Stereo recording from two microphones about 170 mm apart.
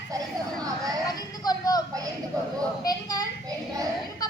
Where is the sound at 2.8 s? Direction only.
25° left (ahead or behind).